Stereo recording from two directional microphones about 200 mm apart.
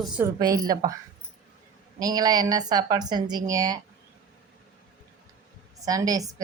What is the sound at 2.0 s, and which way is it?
A woman's voice, 20° right (ahead or behind).